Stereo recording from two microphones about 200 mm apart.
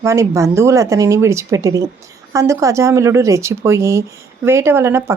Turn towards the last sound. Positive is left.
turn(degrees=-15)  # may be behind; listen again after turning